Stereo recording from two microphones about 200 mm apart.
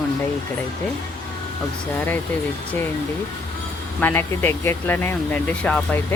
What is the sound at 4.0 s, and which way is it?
Speech, 10° left (ahead or behind).